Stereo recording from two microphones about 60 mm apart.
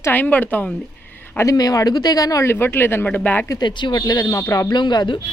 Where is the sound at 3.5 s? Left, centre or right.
Left.